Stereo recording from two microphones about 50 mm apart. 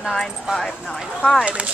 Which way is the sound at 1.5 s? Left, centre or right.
Right.